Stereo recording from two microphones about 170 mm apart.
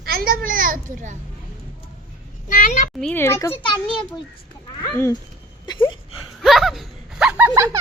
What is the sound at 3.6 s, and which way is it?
Speech, 30° left (ahead or behind).